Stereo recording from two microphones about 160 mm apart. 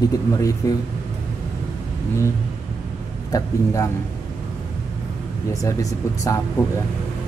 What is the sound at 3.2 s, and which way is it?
Speech, 20° left (ahead or behind).